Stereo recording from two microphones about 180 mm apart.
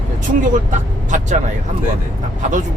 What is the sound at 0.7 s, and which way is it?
Speech, 45° right (ahead or behind).